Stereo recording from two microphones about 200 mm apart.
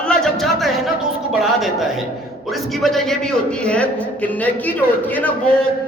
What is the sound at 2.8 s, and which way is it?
A man's voice, centre (ahead or behind).